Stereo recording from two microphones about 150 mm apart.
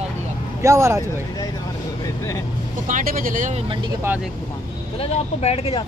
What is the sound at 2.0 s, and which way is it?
Vehicle, 20° left (ahead or behind).